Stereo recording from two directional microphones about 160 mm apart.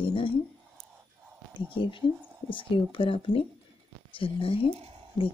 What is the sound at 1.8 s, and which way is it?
Speech, 30° left (ahead or behind).